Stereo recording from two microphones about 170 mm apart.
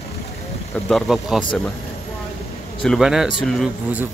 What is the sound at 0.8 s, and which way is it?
Speech, centre (ahead or behind).